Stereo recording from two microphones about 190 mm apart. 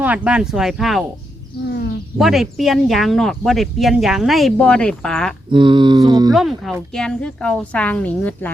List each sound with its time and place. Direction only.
0.0 s speech: 5° right (ahead or behind)
2.1 s speech: centre (ahead or behind)
5.5 s a sound: 25° right (ahead or behind)
6.3 s speech: centre (ahead or behind)